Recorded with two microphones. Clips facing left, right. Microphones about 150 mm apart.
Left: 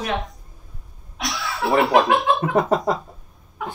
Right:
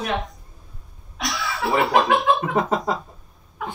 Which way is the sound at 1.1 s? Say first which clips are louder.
Even; centre (ahead or behind).